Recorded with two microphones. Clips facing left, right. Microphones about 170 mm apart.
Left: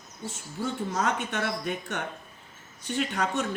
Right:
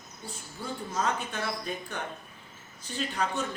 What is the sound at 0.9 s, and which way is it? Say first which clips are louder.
Speech: right 1 dB; 65° left (ahead or behind).